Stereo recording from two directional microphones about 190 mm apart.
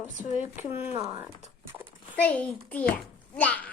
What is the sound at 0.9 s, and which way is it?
Speech, 15° right (ahead or behind).